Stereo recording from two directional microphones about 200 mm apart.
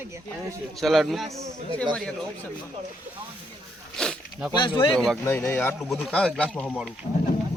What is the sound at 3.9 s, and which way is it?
Zipper, 5° left (ahead or behind).